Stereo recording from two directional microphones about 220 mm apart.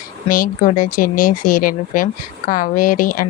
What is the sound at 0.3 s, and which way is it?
Speech, 40° left (ahead or behind).